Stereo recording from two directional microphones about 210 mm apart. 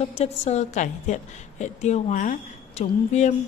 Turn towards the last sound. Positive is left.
turn(degrees=35)  # may be behind; listen again after turning